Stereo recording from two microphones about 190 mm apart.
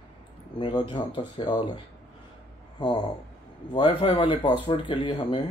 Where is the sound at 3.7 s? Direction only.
25° left (ahead or behind).